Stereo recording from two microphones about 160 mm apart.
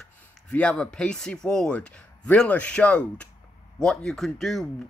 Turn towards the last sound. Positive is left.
turn(degrees=0)  # may be behind; listen again after turning